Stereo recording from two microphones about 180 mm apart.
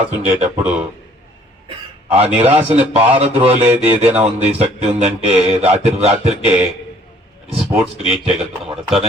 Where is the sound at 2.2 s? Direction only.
35° right (ahead or behind).